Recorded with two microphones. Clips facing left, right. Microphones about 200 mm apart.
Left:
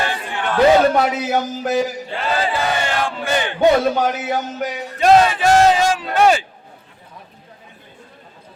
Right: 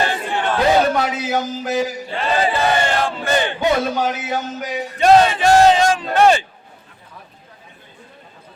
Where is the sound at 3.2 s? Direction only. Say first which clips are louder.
Right 2 dB; 10° left (ahead or behind).